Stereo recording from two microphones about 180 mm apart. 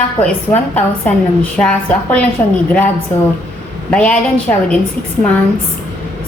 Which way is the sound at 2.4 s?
20° left (ahead or behind).